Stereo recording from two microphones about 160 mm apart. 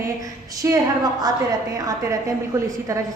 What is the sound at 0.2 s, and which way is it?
A woman's voice, 20° right (ahead or behind).